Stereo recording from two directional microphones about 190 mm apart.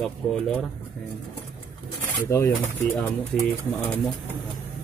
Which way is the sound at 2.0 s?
15° left (ahead or behind).